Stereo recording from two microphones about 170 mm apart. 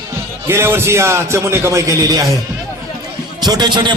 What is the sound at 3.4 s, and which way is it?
Speech, 25° right (ahead or behind).